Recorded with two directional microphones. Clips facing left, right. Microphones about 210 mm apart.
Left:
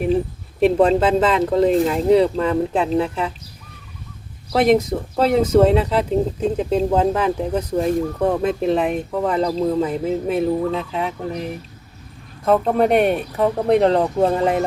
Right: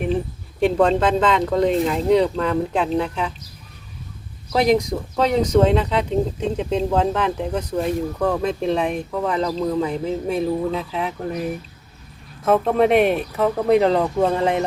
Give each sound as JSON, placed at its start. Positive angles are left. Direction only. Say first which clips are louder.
{"t": 0.6, "sound": "speech", "louder": "left 2 dB", "side_deg": 5}
{"t": 4.5, "sound": "speech", "louder": "left 2 dB", "side_deg": 0}
{"t": 9.4, "sound": "speech", "louder": "left 3 dB", "side_deg": 35}
{"t": 9.6, "sound": "speech", "louder": "left 2 dB", "side_deg": 5}